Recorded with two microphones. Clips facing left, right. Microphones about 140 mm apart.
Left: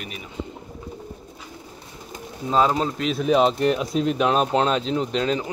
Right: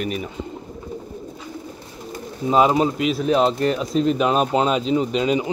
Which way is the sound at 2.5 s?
15° right (ahead or behind).